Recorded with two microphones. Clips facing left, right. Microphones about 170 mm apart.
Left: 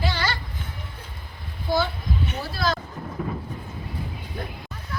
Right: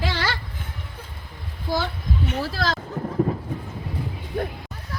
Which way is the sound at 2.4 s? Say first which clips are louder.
Right 1 dB; 90° right.